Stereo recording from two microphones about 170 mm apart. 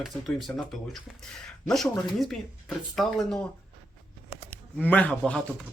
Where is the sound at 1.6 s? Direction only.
Centre (ahead or behind).